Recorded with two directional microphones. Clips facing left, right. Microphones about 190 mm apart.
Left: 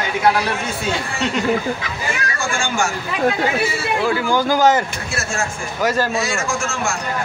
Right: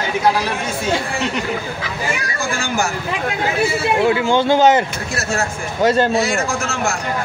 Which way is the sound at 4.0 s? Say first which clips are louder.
Right 3 dB; 25° right (ahead or behind).